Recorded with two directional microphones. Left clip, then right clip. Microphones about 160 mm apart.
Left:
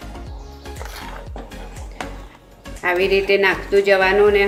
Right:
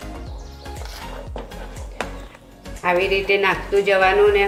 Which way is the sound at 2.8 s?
40° left (ahead or behind).